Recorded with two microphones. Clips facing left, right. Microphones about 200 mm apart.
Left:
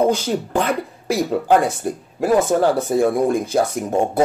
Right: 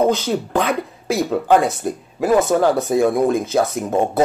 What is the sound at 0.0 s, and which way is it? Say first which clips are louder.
Speech: even; 10° left (ahead or behind).